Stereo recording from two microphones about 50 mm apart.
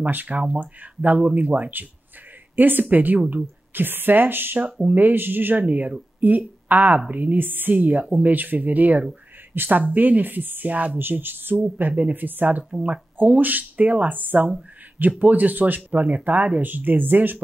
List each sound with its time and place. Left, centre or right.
0.0 s speech: right
3.7 s speech: right
11.0 s speech: right
12.7 s speech: right